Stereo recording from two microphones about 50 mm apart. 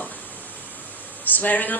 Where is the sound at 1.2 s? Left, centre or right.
Left.